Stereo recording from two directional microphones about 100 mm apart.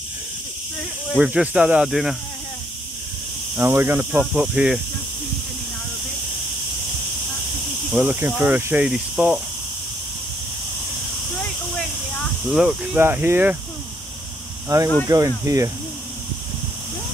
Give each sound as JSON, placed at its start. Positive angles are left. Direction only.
{"t": 1.1, "sound": "speech", "side_deg": -10}
{"t": 3.5, "sound": "speech", "side_deg": -25}
{"t": 4.1, "sound": "speech", "side_deg": -5}
{"t": 7.9, "sound": "speech", "side_deg": -15}
{"t": 8.8, "sound": "speech", "side_deg": -5}
{"t": 12.4, "sound": "speech", "side_deg": -5}
{"t": 12.9, "sound": "speech", "side_deg": -20}
{"t": 14.7, "sound": "speech", "side_deg": -40}